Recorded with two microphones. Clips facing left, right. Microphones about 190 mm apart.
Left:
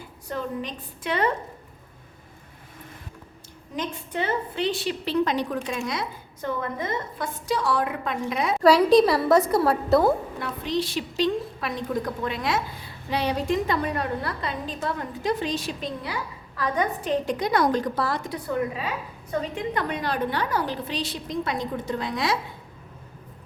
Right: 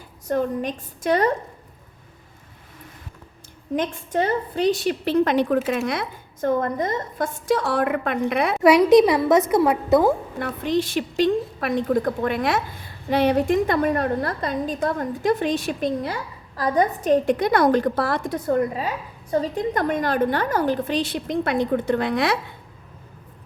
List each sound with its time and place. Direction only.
0.3 s a woman's voice: 45° right (ahead or behind)
3.8 s a woman's voice: 45° right (ahead or behind); by 8.5 s 60° right (ahead or behind)
8.6 s a woman's voice: 20° right (ahead or behind)
10.4 s a woman's voice: 50° right (ahead or behind)
16.6 s a woman's voice: 35° right (ahead or behind); by 22.4 s 60° right (ahead or behind)